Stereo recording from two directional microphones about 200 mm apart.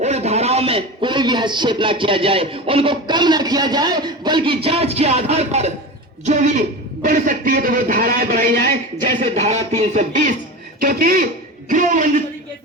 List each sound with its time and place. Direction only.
0.0 s a man's voice: 35° right (ahead or behind)